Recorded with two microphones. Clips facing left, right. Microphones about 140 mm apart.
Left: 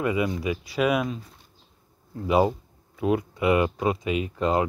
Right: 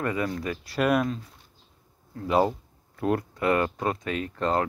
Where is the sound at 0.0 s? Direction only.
10° left (ahead or behind).